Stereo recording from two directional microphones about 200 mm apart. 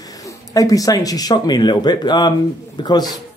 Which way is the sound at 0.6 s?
15° left (ahead or behind).